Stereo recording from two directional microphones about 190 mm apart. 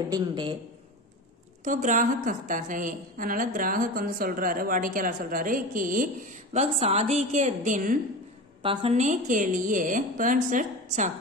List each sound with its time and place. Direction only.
0.1 s a man's voice: 20° right (ahead or behind)
1.6 s a woman's voice: 40° right (ahead or behind)
8.6 s a woman's voice: 35° right (ahead or behind)